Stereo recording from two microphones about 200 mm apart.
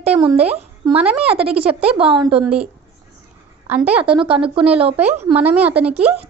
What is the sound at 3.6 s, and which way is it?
Speech, 5° right (ahead or behind).